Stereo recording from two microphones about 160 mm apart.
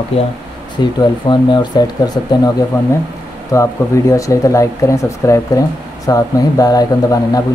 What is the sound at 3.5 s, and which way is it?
Speech, 20° left (ahead or behind).